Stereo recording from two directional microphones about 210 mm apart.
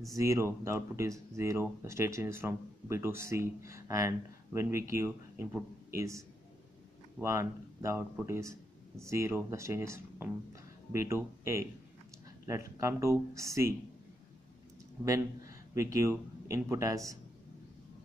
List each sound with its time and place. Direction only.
0.1 s a man's voice: 15° right (ahead or behind)
15.0 s a man's voice: 15° right (ahead or behind)